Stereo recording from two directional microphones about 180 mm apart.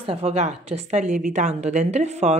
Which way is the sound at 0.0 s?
30° right (ahead or behind).